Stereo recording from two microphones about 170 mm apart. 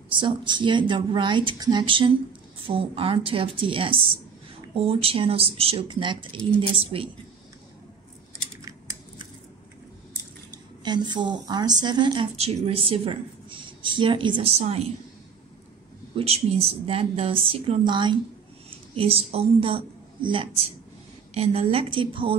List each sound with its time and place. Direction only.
0.1 s a woman's voice: 30° right (ahead or behind)
10.8 s a woman's voice: 25° right (ahead or behind)
16.2 s speech: 35° right (ahead or behind)